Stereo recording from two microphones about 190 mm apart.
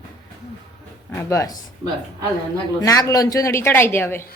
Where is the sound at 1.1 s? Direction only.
15° left (ahead or behind).